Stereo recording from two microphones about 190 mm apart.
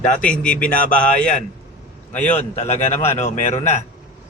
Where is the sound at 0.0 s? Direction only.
45° left (ahead or behind).